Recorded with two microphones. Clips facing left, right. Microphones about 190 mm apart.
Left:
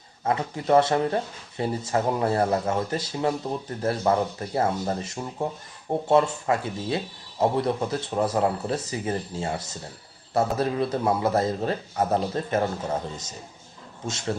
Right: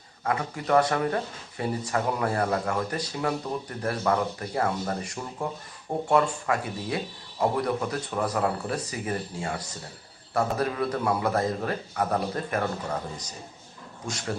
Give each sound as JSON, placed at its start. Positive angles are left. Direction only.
{"t": 0.3, "sound": "speech", "side_deg": 25}